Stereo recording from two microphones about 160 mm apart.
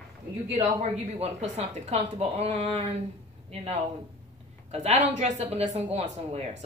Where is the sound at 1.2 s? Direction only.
40° right (ahead or behind).